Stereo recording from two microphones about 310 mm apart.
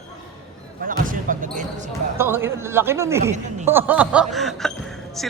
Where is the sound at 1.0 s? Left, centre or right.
Right.